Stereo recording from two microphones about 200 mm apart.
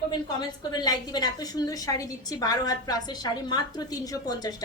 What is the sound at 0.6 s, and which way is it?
A woman's voice, 20° left (ahead or behind).